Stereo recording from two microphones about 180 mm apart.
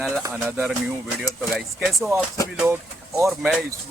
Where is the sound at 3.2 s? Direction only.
Centre (ahead or behind).